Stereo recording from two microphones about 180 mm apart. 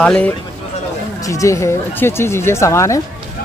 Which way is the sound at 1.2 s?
15° left (ahead or behind).